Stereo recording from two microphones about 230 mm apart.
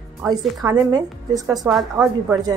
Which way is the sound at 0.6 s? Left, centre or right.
Centre.